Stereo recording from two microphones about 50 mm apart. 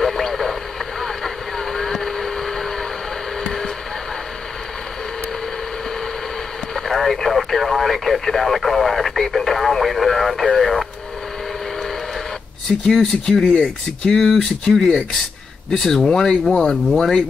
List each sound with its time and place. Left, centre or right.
0.0 s radio: centre
1.0 s motorboat: centre
6.7 s speech: centre
12.8 s speech: centre
13.5 s speech: left
14.1 s speech: centre